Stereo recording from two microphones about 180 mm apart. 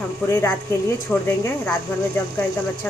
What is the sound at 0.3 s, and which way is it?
Speech, 15° left (ahead or behind).